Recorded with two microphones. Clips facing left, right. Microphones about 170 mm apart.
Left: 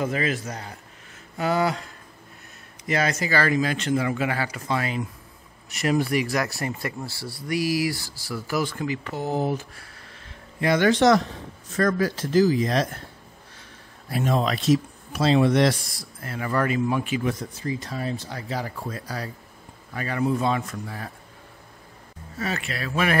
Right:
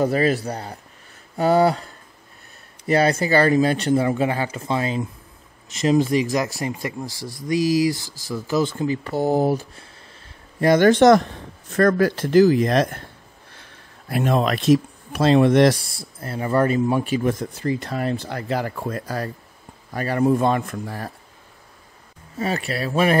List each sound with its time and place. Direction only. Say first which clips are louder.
0.0 s speech: right 6 dB; 35° right (ahead or behind)
2.9 s speech: right 6 dB; 30° right (ahead or behind); by 13.0 s 55° right (ahead or behind)
14.0 s speech: right 3 dB; 60° right (ahead or behind)
15.7 s speech: right 3 dB; 30° right (ahead or behind)
17.2 s speech: right 5 dB; 50° right (ahead or behind)
22.4 s speech: right 5 dB; 35° right (ahead or behind)